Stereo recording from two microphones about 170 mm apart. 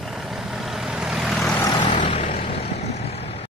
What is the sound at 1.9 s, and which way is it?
Vehicle, 40° left (ahead or behind).